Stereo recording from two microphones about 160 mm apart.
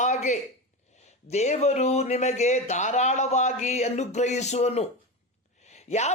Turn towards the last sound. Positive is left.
turn(degrees=45)  # may be behind; listen again after turning